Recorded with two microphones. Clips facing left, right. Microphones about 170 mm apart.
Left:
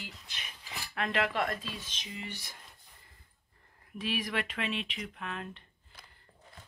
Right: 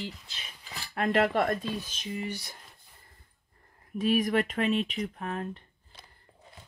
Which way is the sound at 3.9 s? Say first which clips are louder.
Right 9 dB; 45° right (ahead or behind).